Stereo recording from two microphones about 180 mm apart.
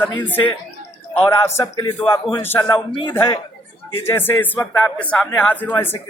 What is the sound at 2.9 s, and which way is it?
Speech, 30° left (ahead or behind).